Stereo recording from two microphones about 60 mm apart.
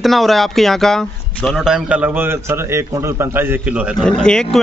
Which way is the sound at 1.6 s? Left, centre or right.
Centre.